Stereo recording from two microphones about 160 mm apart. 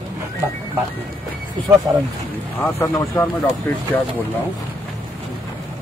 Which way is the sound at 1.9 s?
20° right (ahead or behind).